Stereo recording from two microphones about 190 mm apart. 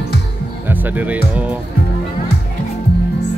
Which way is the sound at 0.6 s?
10° right (ahead or behind).